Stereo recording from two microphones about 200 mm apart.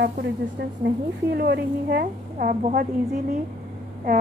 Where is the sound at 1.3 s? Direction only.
55° right (ahead or behind).